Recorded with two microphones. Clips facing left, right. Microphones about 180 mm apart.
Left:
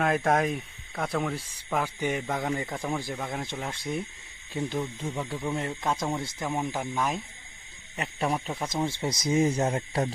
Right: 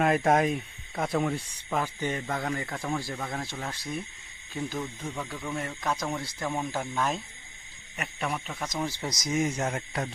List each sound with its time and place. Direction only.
0.0 s speech: centre (ahead or behind)
7.9 s speech: 30° left (ahead or behind)